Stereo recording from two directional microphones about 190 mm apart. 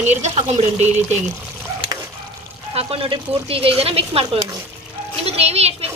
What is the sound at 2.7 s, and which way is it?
A woman's voice, 30° right (ahead or behind).